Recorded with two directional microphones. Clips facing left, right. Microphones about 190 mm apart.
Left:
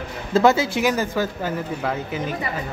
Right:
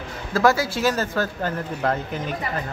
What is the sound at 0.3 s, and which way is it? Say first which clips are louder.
Speech: left 3 dB; 20° left (ahead or behind).